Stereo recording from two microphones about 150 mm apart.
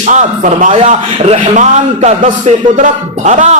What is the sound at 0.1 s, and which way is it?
A man's voice, 55° right (ahead or behind).